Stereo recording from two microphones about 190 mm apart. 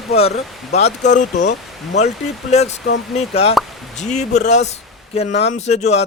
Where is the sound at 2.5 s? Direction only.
35° left (ahead or behind).